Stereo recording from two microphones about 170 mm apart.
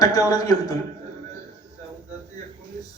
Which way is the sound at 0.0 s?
20° left (ahead or behind).